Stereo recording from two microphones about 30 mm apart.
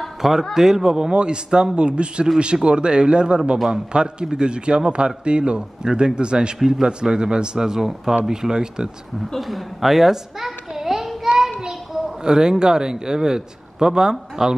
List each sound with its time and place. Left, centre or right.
0.2 s a man's voice: centre
9.4 s a child's voice: centre
11.2 s a sound: centre
11.6 s a woman's voice: right